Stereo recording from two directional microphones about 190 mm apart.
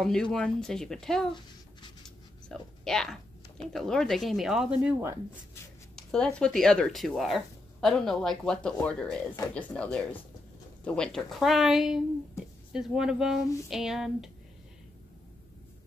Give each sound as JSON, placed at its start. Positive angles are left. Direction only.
{"t": 0.0, "sound": "speech", "side_deg": 0}
{"t": 2.0, "sound": "a sound", "side_deg": 5}
{"t": 3.7, "sound": "speech", "side_deg": 0}
{"t": 5.9, "sound": "speech", "side_deg": 5}